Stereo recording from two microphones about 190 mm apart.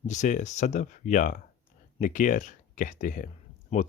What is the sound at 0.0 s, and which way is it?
Speech, 40° left (ahead or behind).